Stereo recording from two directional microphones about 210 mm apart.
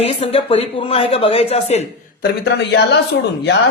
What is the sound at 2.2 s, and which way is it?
Speech, 55° left (ahead or behind).